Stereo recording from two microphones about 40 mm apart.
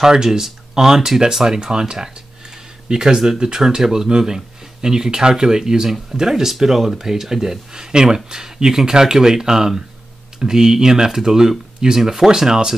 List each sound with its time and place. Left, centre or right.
0.0 s speech: centre